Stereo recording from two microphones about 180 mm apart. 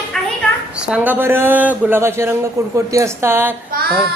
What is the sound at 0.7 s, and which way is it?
Speech, 5° right (ahead or behind).